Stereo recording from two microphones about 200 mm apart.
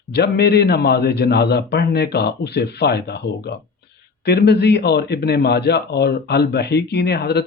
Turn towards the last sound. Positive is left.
turn(degrees=55)  # may be behind; listen again after turning